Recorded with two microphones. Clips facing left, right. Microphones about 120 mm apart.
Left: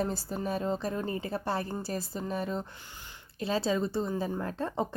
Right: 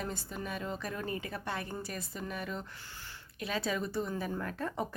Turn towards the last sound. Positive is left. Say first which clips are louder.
# left 4 dB
turn(degrees=25)  # may be behind; listen again after turning